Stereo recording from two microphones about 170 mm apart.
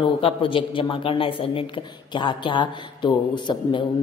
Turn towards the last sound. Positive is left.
turn(degrees=30)  # may be behind; listen again after turning